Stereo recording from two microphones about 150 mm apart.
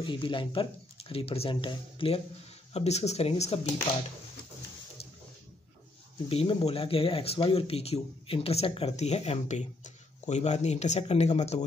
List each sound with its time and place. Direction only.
0.0 s speech: 30° left (ahead or behind)
5.0 s a sound: 40° left (ahead or behind)
6.2 s speech: 35° left (ahead or behind)